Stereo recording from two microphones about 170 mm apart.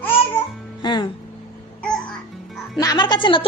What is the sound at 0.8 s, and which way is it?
Speech, 25° left (ahead or behind).